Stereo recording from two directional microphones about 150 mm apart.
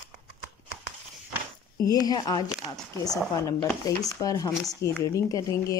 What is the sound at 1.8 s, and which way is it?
Speech, 25° left (ahead or behind).